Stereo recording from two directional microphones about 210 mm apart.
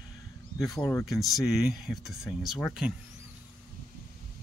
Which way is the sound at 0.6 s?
15° left (ahead or behind).